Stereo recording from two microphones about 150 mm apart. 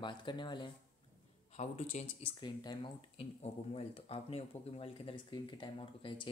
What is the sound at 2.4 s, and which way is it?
Speech, 30° left (ahead or behind).